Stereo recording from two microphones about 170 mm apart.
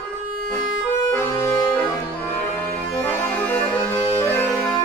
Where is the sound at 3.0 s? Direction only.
10° left (ahead or behind).